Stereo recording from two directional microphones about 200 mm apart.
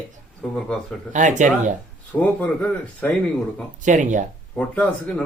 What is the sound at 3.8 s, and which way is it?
Speech, 40° right (ahead or behind).